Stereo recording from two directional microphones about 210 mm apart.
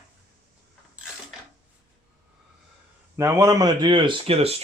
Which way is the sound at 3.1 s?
15° right (ahead or behind).